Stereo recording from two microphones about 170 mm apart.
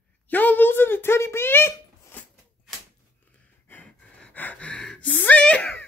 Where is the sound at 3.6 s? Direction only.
10° left (ahead or behind).